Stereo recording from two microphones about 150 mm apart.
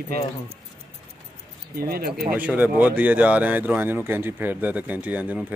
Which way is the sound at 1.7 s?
90° right.